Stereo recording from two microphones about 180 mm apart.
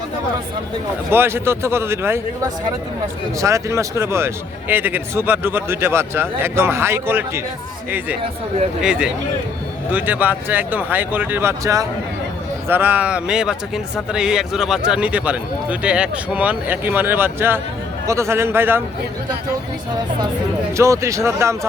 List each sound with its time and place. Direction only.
1.1 s speech: 15° right (ahead or behind)
3.4 s speech: 15° right (ahead or behind)
20.7 s speech: 15° right (ahead or behind)